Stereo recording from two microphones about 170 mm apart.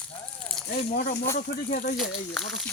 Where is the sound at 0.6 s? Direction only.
Centre (ahead or behind).